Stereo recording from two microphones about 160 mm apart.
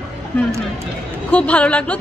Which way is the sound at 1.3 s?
10° left (ahead or behind).